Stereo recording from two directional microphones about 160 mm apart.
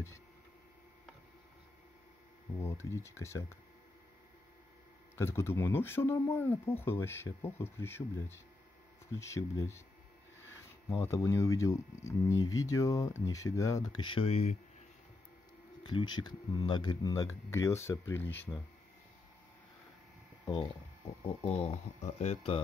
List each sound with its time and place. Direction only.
2.6 s speech: 15° left (ahead or behind)
5.1 s speech: 15° left (ahead or behind)
10.9 s speech: 20° left (ahead or behind); by 14.6 s 45° left (ahead or behind)
15.8 s speech: 30° left (ahead or behind); by 18.5 s 15° left (ahead or behind)
21.5 s speech: 40° left (ahead or behind)